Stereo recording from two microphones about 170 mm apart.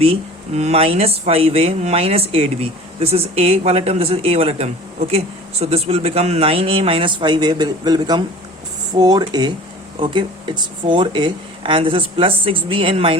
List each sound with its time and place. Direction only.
0.0 s speech: 35° right (ahead or behind)